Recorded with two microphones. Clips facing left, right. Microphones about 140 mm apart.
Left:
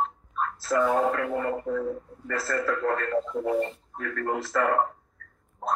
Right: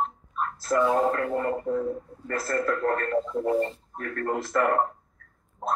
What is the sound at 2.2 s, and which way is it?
Speech, 50° right (ahead or behind).